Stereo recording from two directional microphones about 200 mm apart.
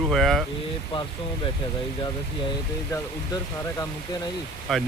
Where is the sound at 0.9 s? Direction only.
25° left (ahead or behind).